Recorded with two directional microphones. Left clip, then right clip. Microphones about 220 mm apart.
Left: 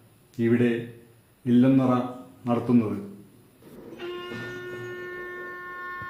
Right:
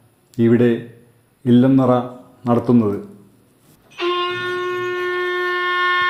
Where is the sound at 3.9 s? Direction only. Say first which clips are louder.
Right 16 dB; 50° right (ahead or behind).